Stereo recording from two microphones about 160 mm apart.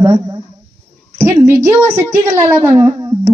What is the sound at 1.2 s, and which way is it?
A woman's voice, 15° right (ahead or behind).